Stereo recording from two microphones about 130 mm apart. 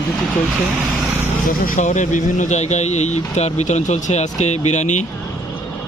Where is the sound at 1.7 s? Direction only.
70° left (ahead or behind).